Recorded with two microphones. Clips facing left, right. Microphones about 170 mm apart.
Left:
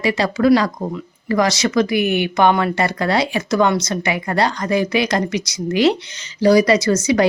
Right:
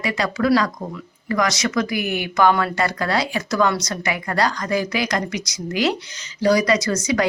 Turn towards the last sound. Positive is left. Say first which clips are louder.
# left 4 dB
turn(degrees=25)  # may be behind; listen again after turning